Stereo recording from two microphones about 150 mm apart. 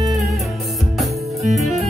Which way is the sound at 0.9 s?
Centre (ahead or behind).